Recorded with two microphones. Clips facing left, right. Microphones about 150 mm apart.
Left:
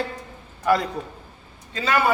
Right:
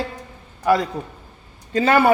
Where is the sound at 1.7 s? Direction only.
55° right (ahead or behind).